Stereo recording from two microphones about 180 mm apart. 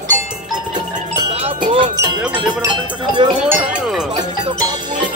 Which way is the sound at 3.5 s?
5° right (ahead or behind).